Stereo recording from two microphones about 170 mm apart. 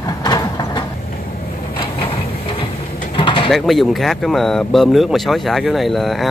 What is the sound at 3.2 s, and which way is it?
Bird, 30° left (ahead or behind).